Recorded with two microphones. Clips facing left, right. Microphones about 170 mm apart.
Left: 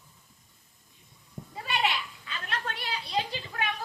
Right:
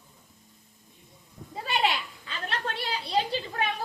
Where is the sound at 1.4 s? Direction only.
25° left (ahead or behind).